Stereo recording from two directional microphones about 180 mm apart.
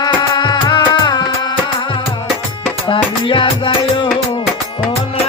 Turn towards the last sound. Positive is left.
turn(degrees=30)  # may be behind; listen again after turning